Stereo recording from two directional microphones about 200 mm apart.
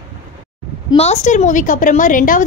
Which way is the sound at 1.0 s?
35° left (ahead or behind).